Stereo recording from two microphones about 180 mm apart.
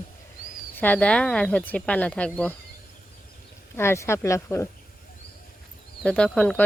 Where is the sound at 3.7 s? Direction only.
15° left (ahead or behind).